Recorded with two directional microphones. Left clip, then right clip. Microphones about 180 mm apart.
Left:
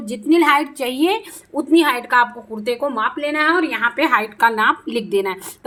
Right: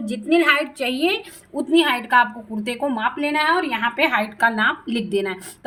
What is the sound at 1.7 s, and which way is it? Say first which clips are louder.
A woman's voice: left 2 dB; 20° left (ahead or behind).